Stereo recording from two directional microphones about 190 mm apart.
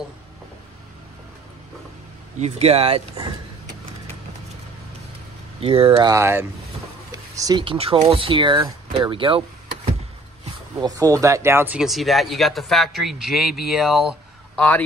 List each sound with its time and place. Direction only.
2.4 s speech: 35° right (ahead or behind)
5.6 s speech: 30° right (ahead or behind)
10.8 s speech: 20° right (ahead or behind); by 14.7 s centre (ahead or behind)